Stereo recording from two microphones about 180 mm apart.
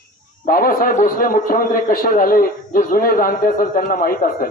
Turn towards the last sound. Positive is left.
turn(degrees=50)  # may be behind; listen again after turning